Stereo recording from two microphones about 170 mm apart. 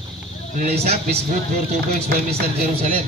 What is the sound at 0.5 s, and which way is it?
Speech, 40° right (ahead or behind).